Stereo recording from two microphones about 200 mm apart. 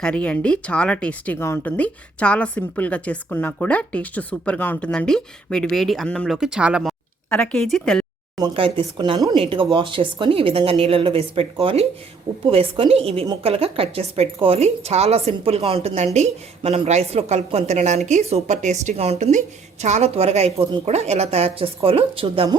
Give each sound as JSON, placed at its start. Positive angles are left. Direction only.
{"t": 0.0, "sound": "speech", "side_deg": 5}
{"t": 8.5, "sound": "a woman's voice", "side_deg": -25}